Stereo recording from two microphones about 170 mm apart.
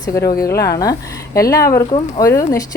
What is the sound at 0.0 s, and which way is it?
A woman's voice, 20° left (ahead or behind).